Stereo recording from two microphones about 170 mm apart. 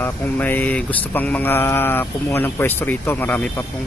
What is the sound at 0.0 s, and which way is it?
Mantra, 10° left (ahead or behind).